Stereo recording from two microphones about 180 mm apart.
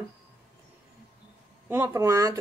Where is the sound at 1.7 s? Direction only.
15° right (ahead or behind).